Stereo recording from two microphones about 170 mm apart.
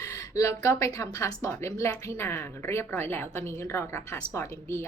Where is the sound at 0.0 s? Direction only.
20° left (ahead or behind).